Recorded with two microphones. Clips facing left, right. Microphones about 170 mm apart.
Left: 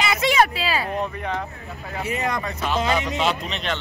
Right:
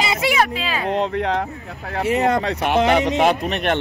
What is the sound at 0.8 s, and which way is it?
Speech, 90° right.